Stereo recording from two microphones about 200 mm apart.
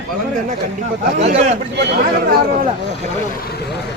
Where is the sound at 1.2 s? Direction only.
35° right (ahead or behind).